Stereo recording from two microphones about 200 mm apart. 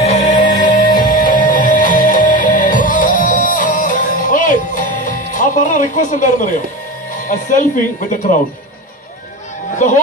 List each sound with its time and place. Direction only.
0.0 s music: 35° left (ahead or behind)
7.2 s speech: 40° left (ahead or behind)
9.8 s speech: 35° left (ahead or behind)